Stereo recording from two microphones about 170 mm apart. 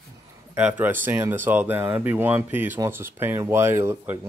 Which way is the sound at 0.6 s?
10° right (ahead or behind).